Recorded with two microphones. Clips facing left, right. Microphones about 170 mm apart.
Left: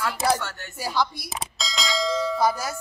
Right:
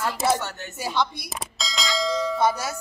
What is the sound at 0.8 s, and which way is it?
Speech, centre (ahead or behind).